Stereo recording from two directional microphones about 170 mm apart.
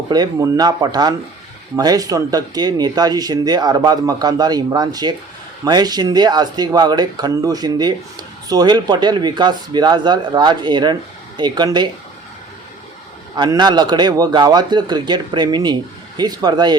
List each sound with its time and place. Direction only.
0.1 s speech: 20° right (ahead or behind)
13.3 s speech: 25° right (ahead or behind)